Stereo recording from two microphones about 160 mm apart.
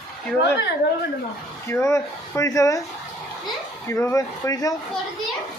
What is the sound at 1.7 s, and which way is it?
Speech, 15° left (ahead or behind).